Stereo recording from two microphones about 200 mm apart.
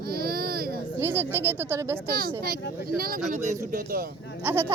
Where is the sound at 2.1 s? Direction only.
45° right (ahead or behind).